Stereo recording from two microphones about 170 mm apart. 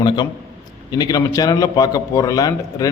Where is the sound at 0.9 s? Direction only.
25° left (ahead or behind).